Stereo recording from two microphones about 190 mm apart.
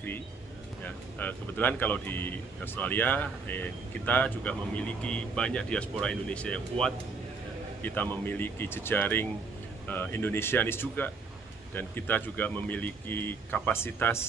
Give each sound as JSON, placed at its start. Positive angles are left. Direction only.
{"t": 0.8, "sound": "speech", "side_deg": 10}